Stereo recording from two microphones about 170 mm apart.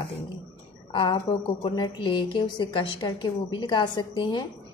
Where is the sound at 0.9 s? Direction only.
25° left (ahead or behind).